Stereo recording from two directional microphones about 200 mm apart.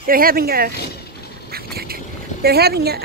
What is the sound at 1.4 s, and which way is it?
Duck, 50° right (ahead or behind).